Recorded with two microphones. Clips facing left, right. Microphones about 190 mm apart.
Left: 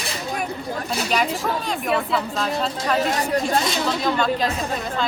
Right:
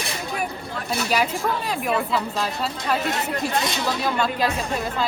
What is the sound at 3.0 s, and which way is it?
Speech, 40° left (ahead or behind).